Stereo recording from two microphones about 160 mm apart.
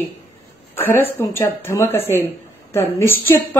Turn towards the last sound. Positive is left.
turn(degrees=15)  # may be behind; listen again after turning